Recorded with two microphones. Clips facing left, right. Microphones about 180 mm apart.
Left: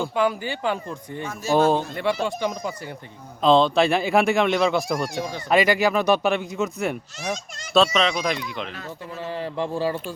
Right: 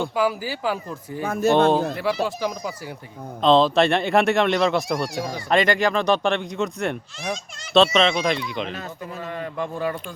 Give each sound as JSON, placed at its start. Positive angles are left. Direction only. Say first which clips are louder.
{"t": 0.0, "sound": "speech", "louder": "even", "side_deg": -5}
{"t": 1.2, "sound": "speech", "louder": "right 7 dB", "side_deg": -60}
{"t": 1.5, "sound": "speech", "louder": "left 3 dB", "side_deg": 5}
{"t": 9.2, "sound": "speech", "louder": "left 2 dB", "side_deg": 30}